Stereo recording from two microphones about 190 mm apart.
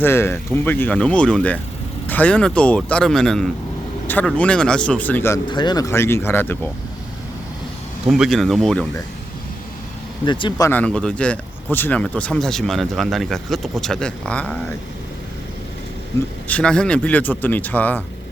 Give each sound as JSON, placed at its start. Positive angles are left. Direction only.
{"t": 0.0, "sound": "speech", "side_deg": 10}
{"t": 5.5, "sound": "speech", "side_deg": 25}
{"t": 8.0, "sound": "speech", "side_deg": 0}
{"t": 10.2, "sound": "speech", "side_deg": 25}
{"t": 10.7, "sound": "speech", "side_deg": 5}
{"t": 16.5, "sound": "speech", "side_deg": 5}